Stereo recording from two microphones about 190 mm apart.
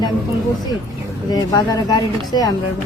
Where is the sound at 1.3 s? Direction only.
20° left (ahead or behind).